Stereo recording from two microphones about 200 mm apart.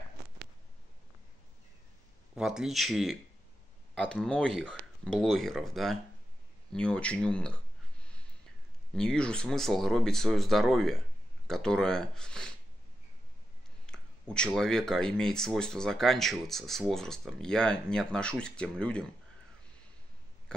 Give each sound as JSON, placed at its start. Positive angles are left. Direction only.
{"t": 2.3, "sound": "speech", "side_deg": -5}
{"t": 8.9, "sound": "speech", "side_deg": 5}
{"t": 13.8, "sound": "speech", "side_deg": 5}